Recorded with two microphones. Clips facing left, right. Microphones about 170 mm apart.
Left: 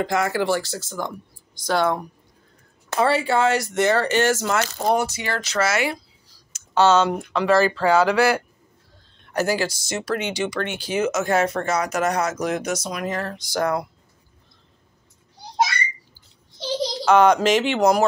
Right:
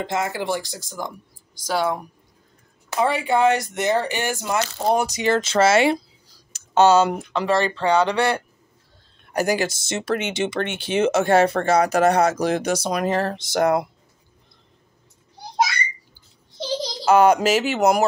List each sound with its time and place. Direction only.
0.0 s speech: 20° right (ahead or behind)
6.7 s speech: 15° right (ahead or behind); by 8.4 s 5° left (ahead or behind)
9.3 s speech: 15° right (ahead or behind)
17.0 s speech: 10° right (ahead or behind)